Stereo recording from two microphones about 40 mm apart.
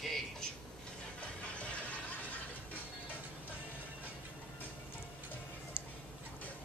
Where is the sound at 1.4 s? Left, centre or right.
Left.